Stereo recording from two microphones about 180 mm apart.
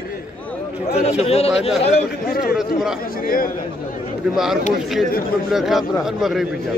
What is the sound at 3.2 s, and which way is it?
Speech, 50° left (ahead or behind).